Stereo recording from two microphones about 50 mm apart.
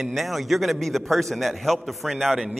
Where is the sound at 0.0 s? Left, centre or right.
Centre.